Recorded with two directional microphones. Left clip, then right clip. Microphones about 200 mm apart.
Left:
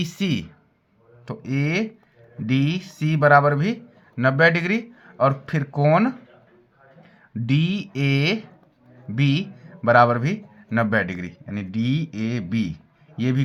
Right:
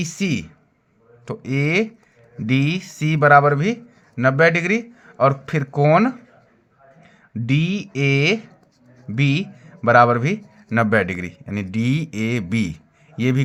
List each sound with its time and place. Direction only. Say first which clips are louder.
0.0 s speech: right 2 dB; 15° right (ahead or behind)
1.2 s speech: right 4 dB; 30° right (ahead or behind)